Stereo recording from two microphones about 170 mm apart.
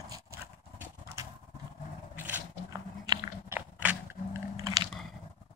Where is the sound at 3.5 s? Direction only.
15° right (ahead or behind).